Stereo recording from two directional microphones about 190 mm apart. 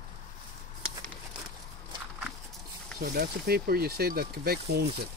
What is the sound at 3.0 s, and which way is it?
Speech, 50° right (ahead or behind).